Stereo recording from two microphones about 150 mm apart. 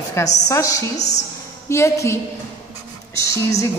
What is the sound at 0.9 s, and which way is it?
Speech, 50° left (ahead or behind).